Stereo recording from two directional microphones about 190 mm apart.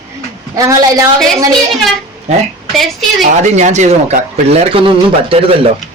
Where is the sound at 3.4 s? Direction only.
40° right (ahead or behind).